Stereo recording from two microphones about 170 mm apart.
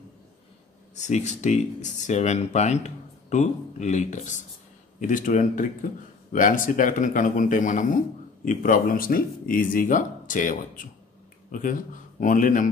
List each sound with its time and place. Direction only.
0.9 s speech: 45° left (ahead or behind)